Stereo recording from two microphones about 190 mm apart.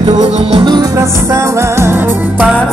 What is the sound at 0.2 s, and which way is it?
Music, 25° right (ahead or behind).